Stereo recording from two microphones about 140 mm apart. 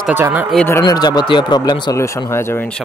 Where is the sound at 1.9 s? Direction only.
20° left (ahead or behind).